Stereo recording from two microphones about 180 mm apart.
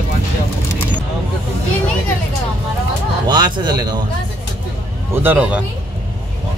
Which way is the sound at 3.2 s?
25° right (ahead or behind).